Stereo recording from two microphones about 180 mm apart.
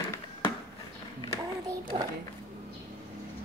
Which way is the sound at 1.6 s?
25° right (ahead or behind).